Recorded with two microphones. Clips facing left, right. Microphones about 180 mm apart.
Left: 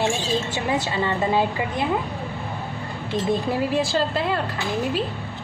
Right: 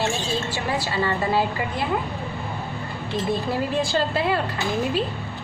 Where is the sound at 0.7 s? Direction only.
20° left (ahead or behind).